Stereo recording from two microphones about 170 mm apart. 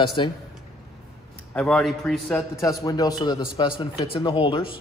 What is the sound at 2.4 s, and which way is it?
A man's voice, 20° left (ahead or behind).